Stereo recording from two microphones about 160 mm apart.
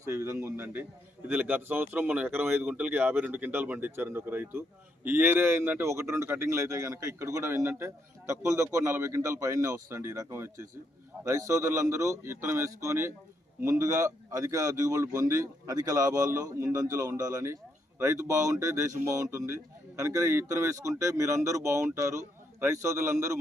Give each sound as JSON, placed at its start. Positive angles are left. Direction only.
{"t": 0.0, "sound": "a man's voice", "side_deg": -15}